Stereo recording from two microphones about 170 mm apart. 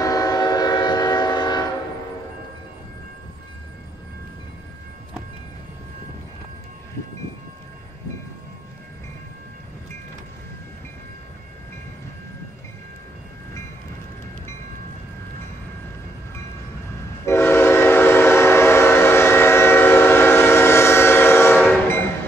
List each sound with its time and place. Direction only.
0.0 s train: 20° left (ahead or behind)
17.3 s train: 15° left (ahead or behind)